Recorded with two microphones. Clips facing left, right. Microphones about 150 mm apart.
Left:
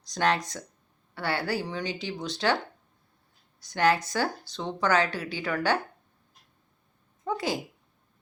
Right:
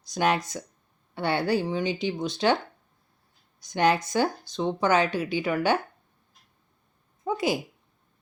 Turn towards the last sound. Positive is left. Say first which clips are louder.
# right 3 dB
turn(degrees=-10)  # may be behind; listen again after turning